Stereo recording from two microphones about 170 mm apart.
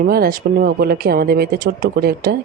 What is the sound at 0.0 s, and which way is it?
Speech, 60° right (ahead or behind).